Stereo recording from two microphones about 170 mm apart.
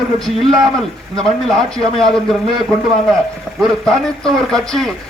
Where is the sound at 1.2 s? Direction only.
Centre (ahead or behind).